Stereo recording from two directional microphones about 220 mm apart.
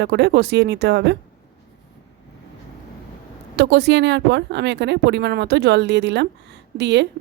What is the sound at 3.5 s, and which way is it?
A woman's voice, 50° right (ahead or behind).